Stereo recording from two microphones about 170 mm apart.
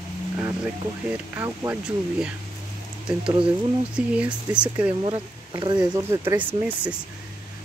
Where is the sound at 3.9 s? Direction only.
5° right (ahead or behind).